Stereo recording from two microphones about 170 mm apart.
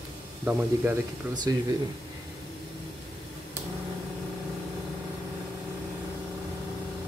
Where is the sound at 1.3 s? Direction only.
25° right (ahead or behind).